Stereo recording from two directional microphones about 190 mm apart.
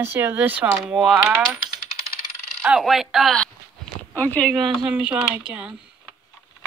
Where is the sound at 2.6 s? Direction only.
Centre (ahead or behind).